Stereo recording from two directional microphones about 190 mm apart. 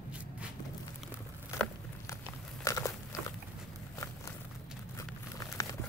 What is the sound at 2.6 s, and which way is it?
Biting, 15° left (ahead or behind).